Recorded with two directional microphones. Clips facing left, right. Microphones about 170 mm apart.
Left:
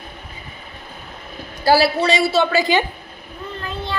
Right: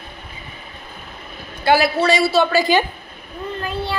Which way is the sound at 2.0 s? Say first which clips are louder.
Right 1 dB; 20° left (ahead or behind).